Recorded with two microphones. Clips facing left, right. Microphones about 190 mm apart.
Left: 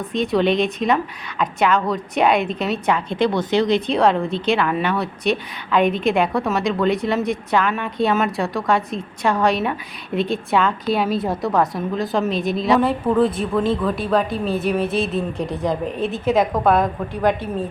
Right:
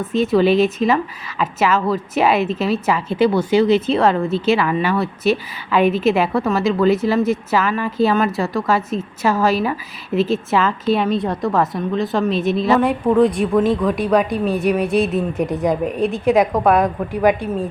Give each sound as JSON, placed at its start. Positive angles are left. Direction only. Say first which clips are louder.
{"t": 0.0, "sound": "a woman's voice", "louder": "right 3 dB", "side_deg": -5}
{"t": 13.4, "sound": "speech", "louder": "right 5 dB", "side_deg": -10}
{"t": 14.0, "sound": "a woman's voice", "louder": "right 3 dB", "side_deg": 0}
{"t": 15.4, "sound": "speech", "louder": "right 5 dB", "side_deg": -20}
{"t": 15.6, "sound": "a woman's voice", "louder": "right 3 dB", "side_deg": 0}